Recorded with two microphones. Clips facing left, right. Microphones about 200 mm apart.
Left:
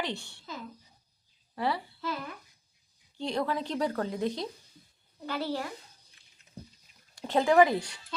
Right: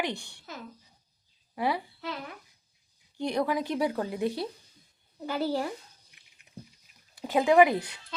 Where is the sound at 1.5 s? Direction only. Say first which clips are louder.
Right 2 dB; 15° right (ahead or behind).